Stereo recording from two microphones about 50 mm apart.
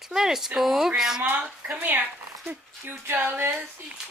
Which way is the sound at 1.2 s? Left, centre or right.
Right.